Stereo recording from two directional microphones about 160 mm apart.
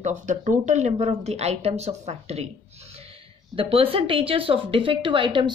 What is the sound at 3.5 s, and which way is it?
A woman's voice, 35° right (ahead or behind).